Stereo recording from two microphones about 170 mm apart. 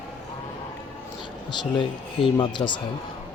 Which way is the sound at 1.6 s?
25° left (ahead or behind).